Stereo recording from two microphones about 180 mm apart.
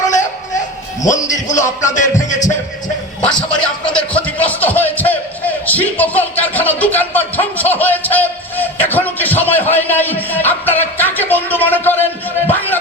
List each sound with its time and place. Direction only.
1.0 s speech: 45° left (ahead or behind)
3.2 s speech: 5° left (ahead or behind)